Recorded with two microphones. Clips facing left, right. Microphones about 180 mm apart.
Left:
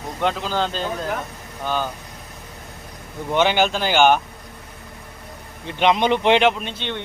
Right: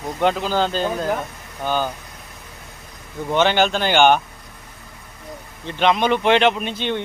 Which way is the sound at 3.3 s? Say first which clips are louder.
Right 1 dB; 10° left (ahead or behind).